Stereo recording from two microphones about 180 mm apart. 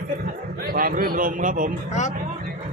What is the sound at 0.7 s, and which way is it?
A man's voice, 55° right (ahead or behind).